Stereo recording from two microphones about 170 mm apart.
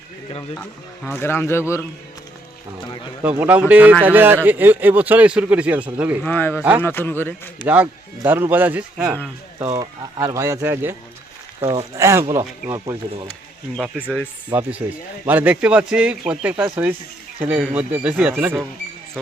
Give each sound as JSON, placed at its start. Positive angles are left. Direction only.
{"t": 0.5, "sound": "speech", "side_deg": 15}
{"t": 3.2, "sound": "speech", "side_deg": -10}
{"t": 6.2, "sound": "speech", "side_deg": 10}
{"t": 6.6, "sound": "speech", "side_deg": -10}
{"t": 6.8, "sound": "speech", "side_deg": 10}
{"t": 7.6, "sound": "speech", "side_deg": -10}
{"t": 9.7, "sound": "speech", "side_deg": -20}
{"t": 11.6, "sound": "speech", "side_deg": -30}
{"t": 11.9, "sound": "speech", "side_deg": -15}
{"t": 13.7, "sound": "speech", "side_deg": -5}